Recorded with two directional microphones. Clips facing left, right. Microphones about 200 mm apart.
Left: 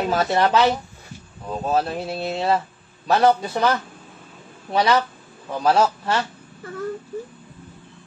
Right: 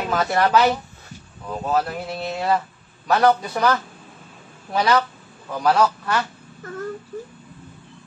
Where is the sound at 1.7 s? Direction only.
25° left (ahead or behind).